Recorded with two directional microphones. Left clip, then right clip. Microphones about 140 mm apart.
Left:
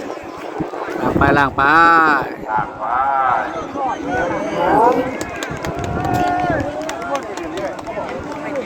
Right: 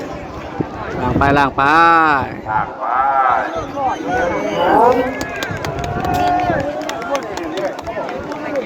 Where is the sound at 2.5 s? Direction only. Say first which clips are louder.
Right 2 dB; 50° right (ahead or behind).